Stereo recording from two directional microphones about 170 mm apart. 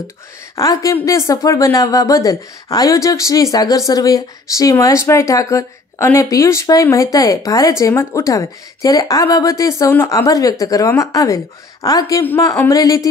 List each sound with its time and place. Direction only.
0.6 s a woman's voice: 20° left (ahead or behind)